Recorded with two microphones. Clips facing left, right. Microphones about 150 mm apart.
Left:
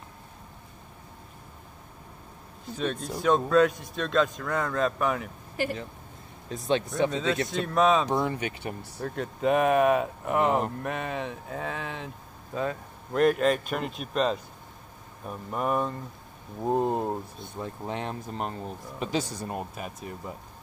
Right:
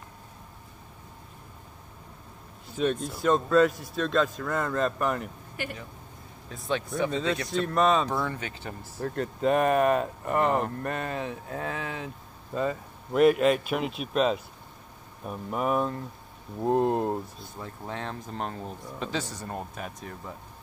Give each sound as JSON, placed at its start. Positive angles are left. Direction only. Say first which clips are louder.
{"t": 2.8, "sound": "speech", "louder": "right 2 dB", "side_deg": -5}
{"t": 5.6, "sound": "speech", "louder": "left 6 dB", "side_deg": 35}
{"t": 7.1, "sound": "speech", "louder": "left 1 dB", "side_deg": 0}
{"t": 8.1, "sound": "speech", "louder": "left 3 dB", "side_deg": 20}
{"t": 9.0, "sound": "speech", "louder": "right 1 dB", "side_deg": 0}
{"t": 17.6, "sound": "speech", "louder": "left 3 dB", "side_deg": 20}
{"t": 18.3, "sound": "speech", "louder": "left 1 dB", "side_deg": 0}
{"t": 19.0, "sound": "speech", "louder": "left 3 dB", "side_deg": 15}